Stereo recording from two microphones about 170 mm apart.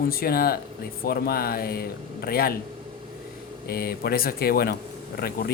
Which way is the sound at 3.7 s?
65° left (ahead or behind).